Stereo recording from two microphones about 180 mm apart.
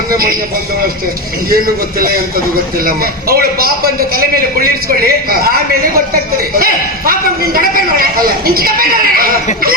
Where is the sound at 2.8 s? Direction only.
55° right (ahead or behind).